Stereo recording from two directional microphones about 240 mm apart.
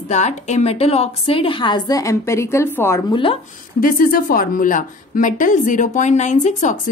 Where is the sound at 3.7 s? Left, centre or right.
Left.